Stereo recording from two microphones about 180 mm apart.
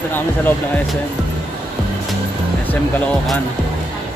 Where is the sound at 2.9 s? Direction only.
Centre (ahead or behind).